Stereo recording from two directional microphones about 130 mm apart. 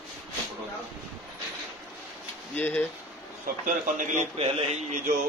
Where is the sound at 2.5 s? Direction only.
15° left (ahead or behind).